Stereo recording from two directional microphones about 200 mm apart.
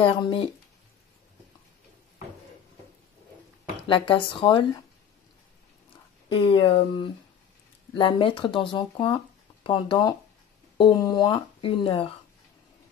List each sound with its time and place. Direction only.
0.0 s speech: 25° left (ahead or behind)
3.8 s speech: 25° left (ahead or behind)
6.2 s speech: 25° left (ahead or behind)